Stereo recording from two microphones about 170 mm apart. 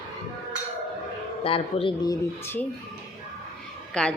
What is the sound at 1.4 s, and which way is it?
Speech, 35° left (ahead or behind).